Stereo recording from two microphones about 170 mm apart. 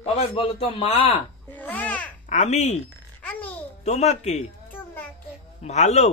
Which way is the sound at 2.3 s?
45° left (ahead or behind).